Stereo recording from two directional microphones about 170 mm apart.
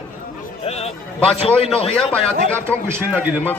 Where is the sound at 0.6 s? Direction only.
40° left (ahead or behind).